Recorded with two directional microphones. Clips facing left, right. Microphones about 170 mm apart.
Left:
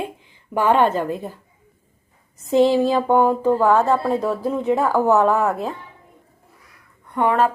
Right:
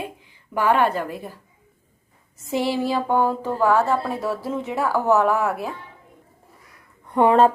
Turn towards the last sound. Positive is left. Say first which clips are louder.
# right 3 dB
turn(degrees=-30)  # may be behind; listen again after turning